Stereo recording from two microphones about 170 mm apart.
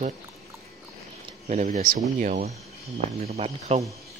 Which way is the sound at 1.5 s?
50° right (ahead or behind).